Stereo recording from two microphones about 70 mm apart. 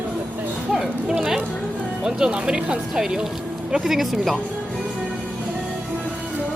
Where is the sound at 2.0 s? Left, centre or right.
Centre.